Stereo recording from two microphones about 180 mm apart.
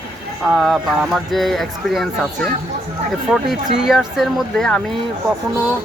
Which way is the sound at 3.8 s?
Centre (ahead or behind).